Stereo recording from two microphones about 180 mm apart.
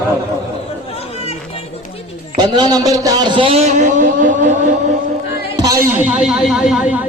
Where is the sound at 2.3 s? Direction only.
25° right (ahead or behind); by 4.5 s 45° right (ahead or behind).